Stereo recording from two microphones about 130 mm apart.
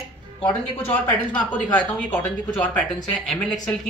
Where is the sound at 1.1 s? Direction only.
10° left (ahead or behind).